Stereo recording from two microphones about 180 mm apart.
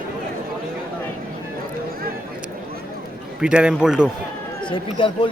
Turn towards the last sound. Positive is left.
turn(degrees=30)  # may be behind; listen again after turning